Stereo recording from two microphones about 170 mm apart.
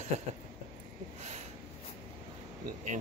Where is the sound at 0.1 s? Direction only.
40° right (ahead or behind).